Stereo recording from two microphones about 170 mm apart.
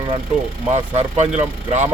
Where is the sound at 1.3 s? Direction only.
45° right (ahead or behind).